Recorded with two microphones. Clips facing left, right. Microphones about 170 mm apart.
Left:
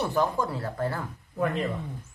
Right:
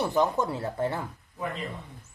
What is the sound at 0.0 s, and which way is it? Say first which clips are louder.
Speech: right 1 dB; 15° right (ahead or behind).